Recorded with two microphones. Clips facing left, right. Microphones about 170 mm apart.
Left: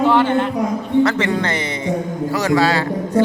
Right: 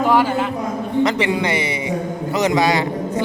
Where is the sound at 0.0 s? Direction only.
10° right (ahead or behind).